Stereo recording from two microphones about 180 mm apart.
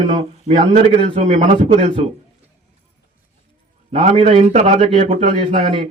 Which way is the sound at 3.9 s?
40° right (ahead or behind).